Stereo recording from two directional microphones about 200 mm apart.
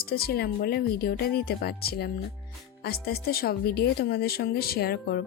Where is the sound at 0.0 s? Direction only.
50° left (ahead or behind).